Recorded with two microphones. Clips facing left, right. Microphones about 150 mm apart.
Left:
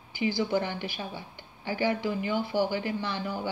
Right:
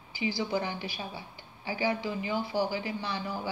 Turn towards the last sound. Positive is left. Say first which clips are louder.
# left 2 dB
turn(degrees=55)  # may be behind; listen again after turning